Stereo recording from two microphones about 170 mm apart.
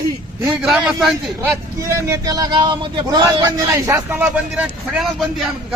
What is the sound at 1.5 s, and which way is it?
Speech, 15° right (ahead or behind).